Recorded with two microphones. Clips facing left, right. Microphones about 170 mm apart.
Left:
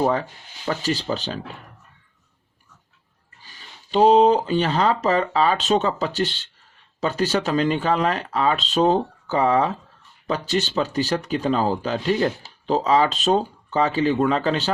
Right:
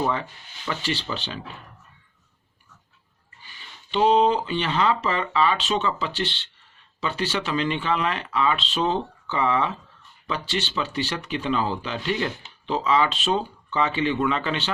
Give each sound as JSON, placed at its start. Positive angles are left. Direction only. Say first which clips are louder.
{"t": 0.0, "sound": "speech", "louder": "left 5 dB", "side_deg": 40}
{"t": 3.4, "sound": "speech", "louder": "left 1 dB", "side_deg": 40}